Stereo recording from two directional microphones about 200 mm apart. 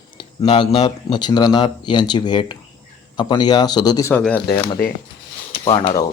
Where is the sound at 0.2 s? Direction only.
25° left (ahead or behind).